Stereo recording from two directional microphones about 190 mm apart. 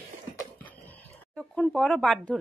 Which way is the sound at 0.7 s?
10° left (ahead or behind).